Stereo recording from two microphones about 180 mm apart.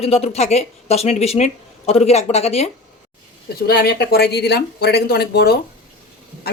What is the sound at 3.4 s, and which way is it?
A woman's voice, 60° left (ahead or behind).